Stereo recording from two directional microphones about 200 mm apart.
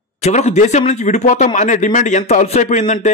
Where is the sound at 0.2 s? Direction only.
35° left (ahead or behind).